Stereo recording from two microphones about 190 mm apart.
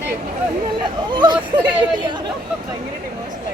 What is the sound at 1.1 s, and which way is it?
Speech, 25° right (ahead or behind).